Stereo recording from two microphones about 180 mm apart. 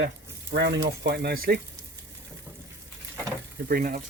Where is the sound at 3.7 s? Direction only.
55° right (ahead or behind).